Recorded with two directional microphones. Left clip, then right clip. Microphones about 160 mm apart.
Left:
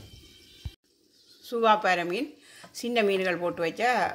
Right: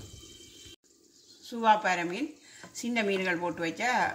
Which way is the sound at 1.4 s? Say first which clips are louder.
Left 2 dB; 55° left (ahead or behind).